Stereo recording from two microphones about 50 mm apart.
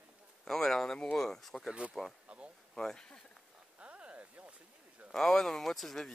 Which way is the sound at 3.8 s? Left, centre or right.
Right.